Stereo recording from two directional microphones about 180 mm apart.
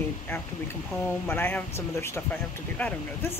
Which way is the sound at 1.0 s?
10° left (ahead or behind).